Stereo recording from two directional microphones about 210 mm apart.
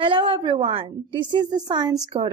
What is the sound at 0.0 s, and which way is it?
A woman's voice, 25° right (ahead or behind).